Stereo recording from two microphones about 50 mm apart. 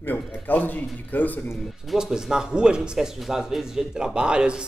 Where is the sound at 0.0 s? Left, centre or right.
Left.